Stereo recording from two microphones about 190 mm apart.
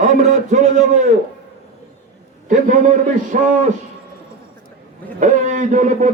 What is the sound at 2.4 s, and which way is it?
A man's voice, 45° right (ahead or behind).